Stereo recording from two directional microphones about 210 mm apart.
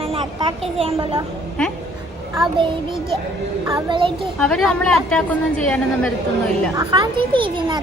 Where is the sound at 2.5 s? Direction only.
25° right (ahead or behind).